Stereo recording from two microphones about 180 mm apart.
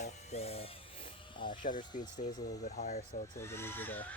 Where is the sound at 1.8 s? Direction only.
45° left (ahead or behind).